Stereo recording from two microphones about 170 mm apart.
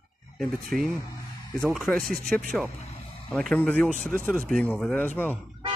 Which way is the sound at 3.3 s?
Centre (ahead or behind).